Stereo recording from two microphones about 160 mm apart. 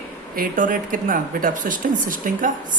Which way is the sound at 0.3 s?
55° right (ahead or behind).